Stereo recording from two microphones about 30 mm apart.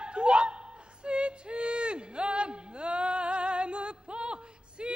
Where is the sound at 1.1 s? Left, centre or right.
Right.